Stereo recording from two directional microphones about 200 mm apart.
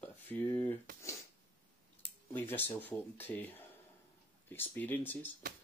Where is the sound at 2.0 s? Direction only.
10° left (ahead or behind).